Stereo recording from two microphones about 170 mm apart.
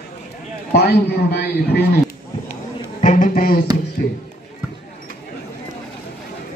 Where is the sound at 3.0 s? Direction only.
50° left (ahead or behind).